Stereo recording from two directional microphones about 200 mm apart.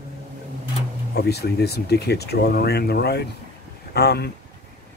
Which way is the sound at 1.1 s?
55° left (ahead or behind).